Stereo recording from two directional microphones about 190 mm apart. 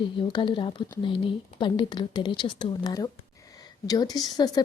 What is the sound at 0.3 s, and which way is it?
A woman's voice, 25° left (ahead or behind).